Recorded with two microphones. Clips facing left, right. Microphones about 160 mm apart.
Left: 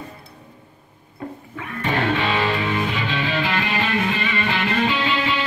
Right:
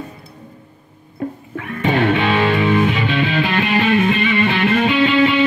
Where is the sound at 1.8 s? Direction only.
55° right (ahead or behind).